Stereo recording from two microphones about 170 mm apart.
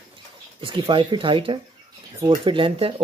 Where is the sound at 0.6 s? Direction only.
30° right (ahead or behind).